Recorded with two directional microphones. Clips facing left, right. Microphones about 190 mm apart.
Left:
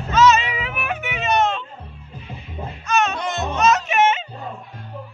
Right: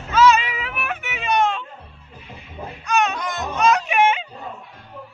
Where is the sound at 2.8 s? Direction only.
15° right (ahead or behind).